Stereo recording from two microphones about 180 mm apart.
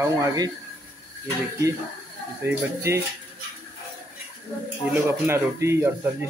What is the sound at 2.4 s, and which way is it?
Speech, 15° right (ahead or behind).